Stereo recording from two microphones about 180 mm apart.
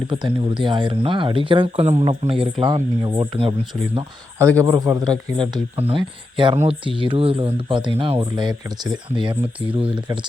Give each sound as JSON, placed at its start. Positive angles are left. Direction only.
{"t": 0.1, "sound": "speech", "side_deg": -25}
{"t": 4.4, "sound": "a man's voice", "side_deg": -15}
{"t": 5.7, "sound": "speech", "side_deg": -30}